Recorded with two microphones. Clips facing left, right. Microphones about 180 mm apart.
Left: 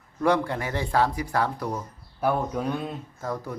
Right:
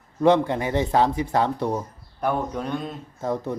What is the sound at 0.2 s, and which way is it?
Speech, 20° right (ahead or behind).